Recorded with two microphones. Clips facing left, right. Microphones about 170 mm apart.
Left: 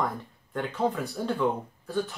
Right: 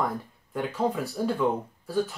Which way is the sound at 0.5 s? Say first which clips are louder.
Right 1 dB; 5° right (ahead or behind).